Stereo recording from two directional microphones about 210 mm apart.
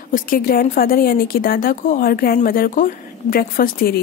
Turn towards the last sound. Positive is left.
turn(degrees=45)  # may be behind; listen again after turning